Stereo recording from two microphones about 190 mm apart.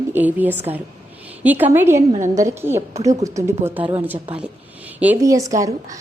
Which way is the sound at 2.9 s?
35° right (ahead or behind).